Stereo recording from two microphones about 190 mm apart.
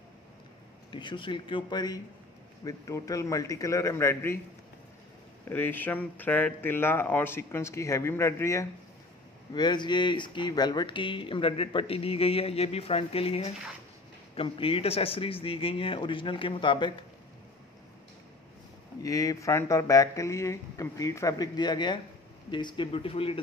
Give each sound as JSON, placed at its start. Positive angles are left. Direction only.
{"t": 0.9, "sound": "speech", "side_deg": 25}
{"t": 5.5, "sound": "speech", "side_deg": 10}
{"t": 19.0, "sound": "speech", "side_deg": 15}